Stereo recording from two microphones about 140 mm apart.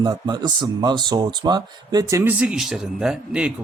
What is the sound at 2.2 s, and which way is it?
Speech, 15° right (ahead or behind).